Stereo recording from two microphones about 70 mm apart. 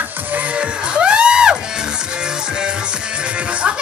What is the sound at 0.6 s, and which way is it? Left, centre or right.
Music, centre.